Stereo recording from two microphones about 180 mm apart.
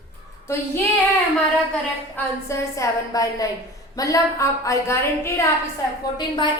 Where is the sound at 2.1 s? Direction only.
15° left (ahead or behind).